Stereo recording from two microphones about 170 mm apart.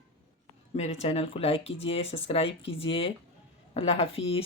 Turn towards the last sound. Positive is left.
turn(degrees=35)  # may be behind; listen again after turning